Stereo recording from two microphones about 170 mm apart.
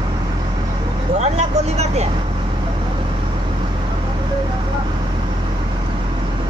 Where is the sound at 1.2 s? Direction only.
40° right (ahead or behind).